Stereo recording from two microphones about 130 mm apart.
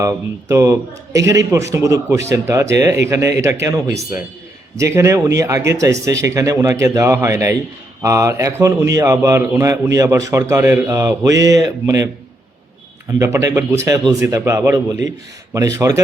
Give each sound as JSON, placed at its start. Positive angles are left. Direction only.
{"t": 0.0, "sound": "a man's voice", "side_deg": -25}
{"t": 13.1, "sound": "a man's voice", "side_deg": -25}